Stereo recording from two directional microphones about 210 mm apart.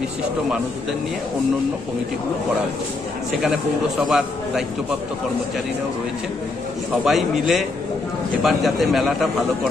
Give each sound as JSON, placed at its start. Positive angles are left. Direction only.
{"t": 4.0, "sound": "a man's voice", "side_deg": 0}
{"t": 7.1, "sound": "a man's voice", "side_deg": 0}